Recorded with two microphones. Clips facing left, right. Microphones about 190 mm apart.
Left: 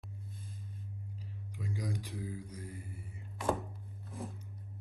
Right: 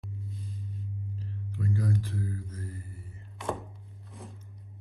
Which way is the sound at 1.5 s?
15° left (ahead or behind).